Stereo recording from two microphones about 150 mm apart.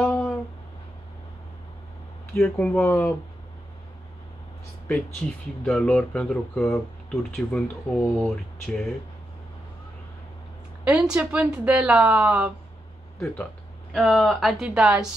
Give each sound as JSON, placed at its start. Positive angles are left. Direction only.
{"t": 0.0, "sound": "a sound", "side_deg": 5}
{"t": 2.3, "sound": "speech", "side_deg": 10}
{"t": 4.8, "sound": "speech", "side_deg": 10}
{"t": 10.8, "sound": "a woman's voice", "side_deg": -5}
{"t": 13.2, "sound": "speech", "side_deg": 10}
{"t": 13.9, "sound": "speech", "side_deg": 0}